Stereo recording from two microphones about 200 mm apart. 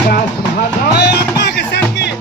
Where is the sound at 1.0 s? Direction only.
55° left (ahead or behind).